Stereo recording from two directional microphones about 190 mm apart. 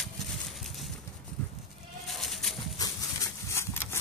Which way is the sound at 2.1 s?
Centre (ahead or behind).